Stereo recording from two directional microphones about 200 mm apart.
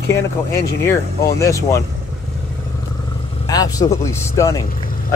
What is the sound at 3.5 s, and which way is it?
Speech, 15° left (ahead or behind).